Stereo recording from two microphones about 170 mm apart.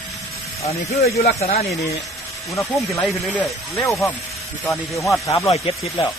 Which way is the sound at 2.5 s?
20° left (ahead or behind).